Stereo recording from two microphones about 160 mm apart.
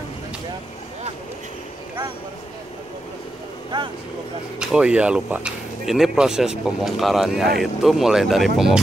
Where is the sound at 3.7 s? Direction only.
30° right (ahead or behind).